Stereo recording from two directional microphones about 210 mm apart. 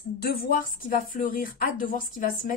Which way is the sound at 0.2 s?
40° left (ahead or behind).